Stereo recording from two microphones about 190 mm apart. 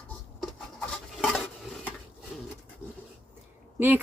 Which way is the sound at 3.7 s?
10° right (ahead or behind).